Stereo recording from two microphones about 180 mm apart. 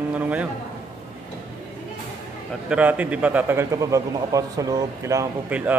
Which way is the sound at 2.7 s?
10° right (ahead or behind).